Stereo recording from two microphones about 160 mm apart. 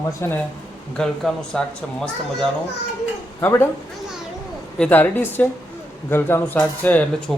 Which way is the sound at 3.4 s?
15° left (ahead or behind).